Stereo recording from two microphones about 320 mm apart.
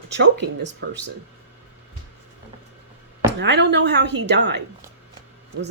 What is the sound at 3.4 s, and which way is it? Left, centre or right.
Speech, right.